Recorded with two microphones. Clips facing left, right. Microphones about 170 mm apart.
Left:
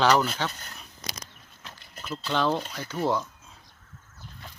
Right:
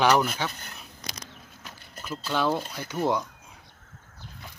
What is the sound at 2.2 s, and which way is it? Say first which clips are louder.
Speech: even; 10° right (ahead or behind).